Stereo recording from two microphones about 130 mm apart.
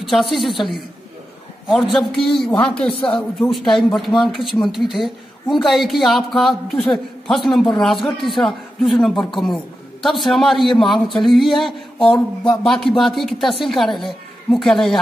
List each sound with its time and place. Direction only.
0.0 s a woman's voice: centre (ahead or behind)
2.9 s speech: 40° left (ahead or behind)
3.2 s a woman's voice: centre (ahead or behind)